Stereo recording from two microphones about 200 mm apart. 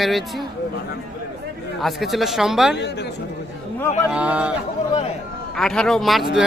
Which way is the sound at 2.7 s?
55° left (ahead or behind).